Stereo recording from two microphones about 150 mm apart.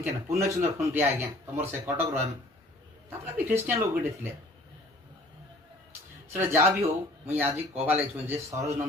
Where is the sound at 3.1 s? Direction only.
15° right (ahead or behind).